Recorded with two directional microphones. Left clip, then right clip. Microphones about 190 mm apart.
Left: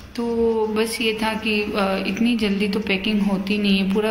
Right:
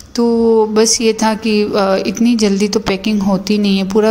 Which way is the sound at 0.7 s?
50° right (ahead or behind).